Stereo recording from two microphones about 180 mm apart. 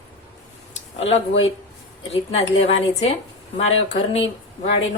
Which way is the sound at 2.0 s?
35° left (ahead or behind).